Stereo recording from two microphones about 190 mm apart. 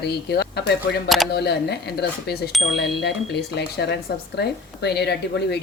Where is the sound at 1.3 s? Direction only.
60° left (ahead or behind).